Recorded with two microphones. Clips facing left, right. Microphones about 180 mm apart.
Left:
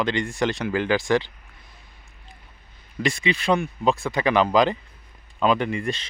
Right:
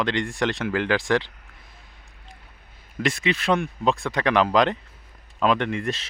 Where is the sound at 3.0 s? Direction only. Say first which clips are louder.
Even; centre (ahead or behind).